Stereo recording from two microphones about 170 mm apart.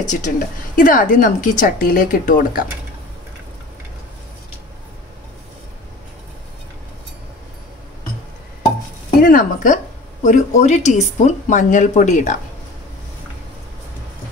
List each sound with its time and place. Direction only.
0.0 s speech: 45° left (ahead or behind)
9.2 s a woman's voice: 55° left (ahead or behind)